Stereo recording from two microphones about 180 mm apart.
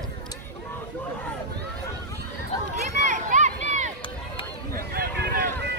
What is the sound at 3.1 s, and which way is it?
Run, 45° right (ahead or behind).